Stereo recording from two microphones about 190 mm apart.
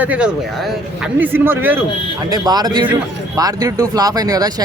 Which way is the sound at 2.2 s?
20° right (ahead or behind).